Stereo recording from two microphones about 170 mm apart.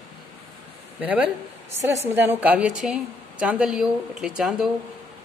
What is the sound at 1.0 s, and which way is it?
A man's voice, 10° right (ahead or behind).